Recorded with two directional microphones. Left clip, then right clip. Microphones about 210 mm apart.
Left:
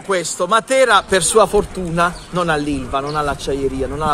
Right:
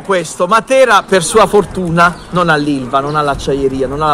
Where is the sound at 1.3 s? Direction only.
10° left (ahead or behind).